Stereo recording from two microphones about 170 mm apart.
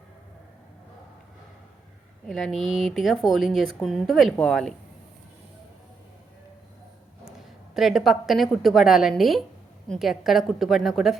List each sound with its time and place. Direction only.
2.2 s a woman's voice: centre (ahead or behind)
7.3 s a woman's voice: centre (ahead or behind)